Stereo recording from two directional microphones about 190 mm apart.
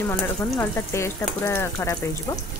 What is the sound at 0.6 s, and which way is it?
Speech, 15° left (ahead or behind).